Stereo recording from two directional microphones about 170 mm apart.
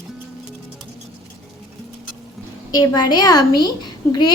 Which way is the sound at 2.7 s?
25° left (ahead or behind).